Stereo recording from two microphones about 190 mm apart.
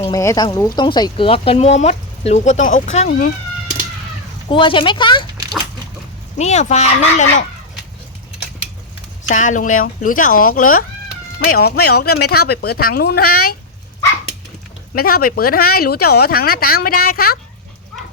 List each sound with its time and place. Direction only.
0.1 s speech: 20° left (ahead or behind); by 3.3 s 45° left (ahead or behind)
4.4 s speech: 25° left (ahead or behind)
6.4 s speech: 35° left (ahead or behind)
9.3 s speech: 40° left (ahead or behind)
14.9 s speech: 50° left (ahead or behind)